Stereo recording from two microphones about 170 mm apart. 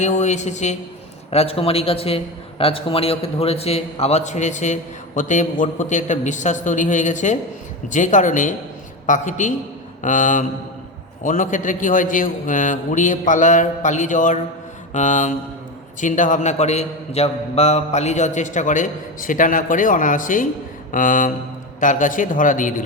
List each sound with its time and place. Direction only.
0.0 s a man's voice: 45° left (ahead or behind)